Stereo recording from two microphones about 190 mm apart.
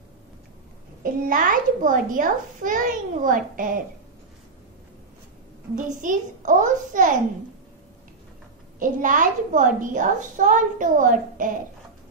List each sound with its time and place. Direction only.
1.0 s a child's voice: 45° right (ahead or behind)
5.9 s a child's voice: 40° right (ahead or behind)
8.7 s a child's voice: 45° right (ahead or behind)